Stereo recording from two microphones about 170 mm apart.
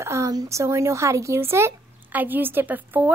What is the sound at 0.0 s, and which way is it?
Speech, 15° right (ahead or behind).